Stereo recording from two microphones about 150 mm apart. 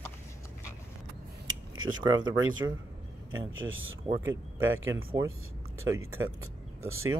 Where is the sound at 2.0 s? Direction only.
30° right (ahead or behind).